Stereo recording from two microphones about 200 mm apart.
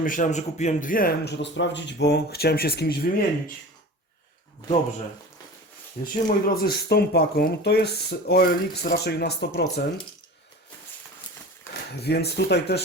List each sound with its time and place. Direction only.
0.0 s speech: 40° left (ahead or behind)
6.2 s speech: 50° left (ahead or behind)
11.7 s a sound: 10° left (ahead or behind)
12.0 s speech: 55° left (ahead or behind)